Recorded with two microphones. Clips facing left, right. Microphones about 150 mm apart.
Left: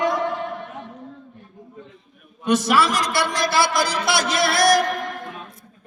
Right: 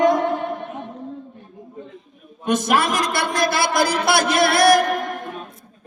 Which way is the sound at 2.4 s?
50° right (ahead or behind).